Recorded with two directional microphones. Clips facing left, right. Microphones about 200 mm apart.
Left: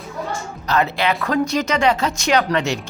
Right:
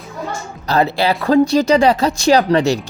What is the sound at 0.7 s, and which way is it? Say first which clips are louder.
Speech: right 4 dB; 35° right (ahead or behind).